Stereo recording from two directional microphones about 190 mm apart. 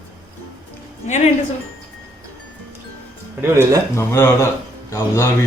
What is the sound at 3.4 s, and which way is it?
Speech, 15° right (ahead or behind).